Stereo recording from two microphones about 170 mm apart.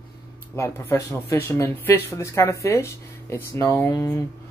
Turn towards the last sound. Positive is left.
turn(degrees=15)  # may be behind; listen again after turning